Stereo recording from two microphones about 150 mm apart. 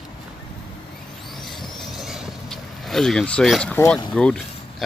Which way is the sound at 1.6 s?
Centre (ahead or behind).